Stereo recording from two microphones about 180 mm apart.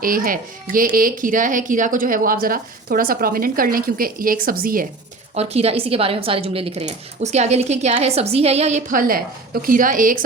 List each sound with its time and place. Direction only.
0.0 s a woman's voice: 50° right (ahead or behind)
5.3 s a woman's voice: 35° right (ahead or behind)